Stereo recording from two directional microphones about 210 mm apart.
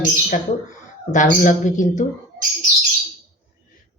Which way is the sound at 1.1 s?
35° left (ahead or behind).